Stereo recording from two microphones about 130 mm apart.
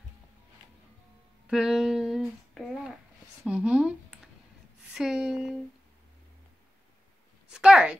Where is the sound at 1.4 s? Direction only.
5° right (ahead or behind).